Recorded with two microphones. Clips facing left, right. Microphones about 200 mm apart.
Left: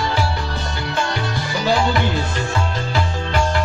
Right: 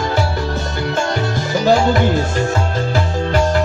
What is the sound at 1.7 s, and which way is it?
Music, 45° right (ahead or behind).